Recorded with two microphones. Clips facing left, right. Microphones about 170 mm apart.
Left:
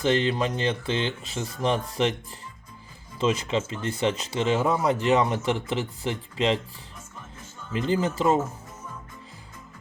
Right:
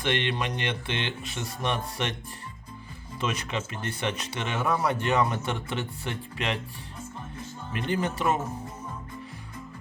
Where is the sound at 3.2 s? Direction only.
25° left (ahead or behind).